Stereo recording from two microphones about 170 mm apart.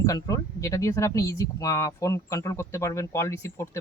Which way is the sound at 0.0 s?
20° left (ahead or behind).